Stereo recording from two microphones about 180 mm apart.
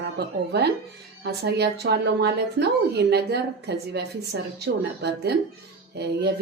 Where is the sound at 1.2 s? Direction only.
70° right (ahead or behind).